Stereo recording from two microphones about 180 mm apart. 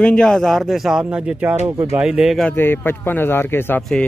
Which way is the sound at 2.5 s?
10° left (ahead or behind).